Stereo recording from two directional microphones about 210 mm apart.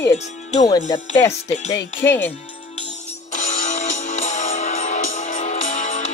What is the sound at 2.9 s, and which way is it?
Music, 35° left (ahead or behind).